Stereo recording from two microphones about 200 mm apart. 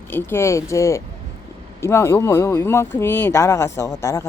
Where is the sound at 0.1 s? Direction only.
10° left (ahead or behind).